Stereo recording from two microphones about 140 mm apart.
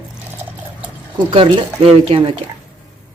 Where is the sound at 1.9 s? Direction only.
40° right (ahead or behind).